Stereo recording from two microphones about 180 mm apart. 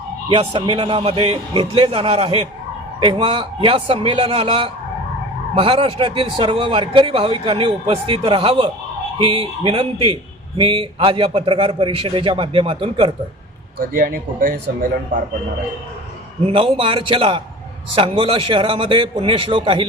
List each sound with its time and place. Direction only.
0.3 s a man's voice: 30° right (ahead or behind)
13.9 s speech: 50° right (ahead or behind)
16.5 s a man's voice: 30° right (ahead or behind)